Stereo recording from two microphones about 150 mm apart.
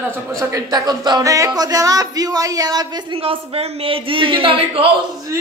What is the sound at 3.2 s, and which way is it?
A man's voice, 40° right (ahead or behind).